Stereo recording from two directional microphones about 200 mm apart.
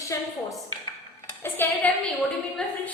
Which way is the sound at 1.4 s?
10° left (ahead or behind).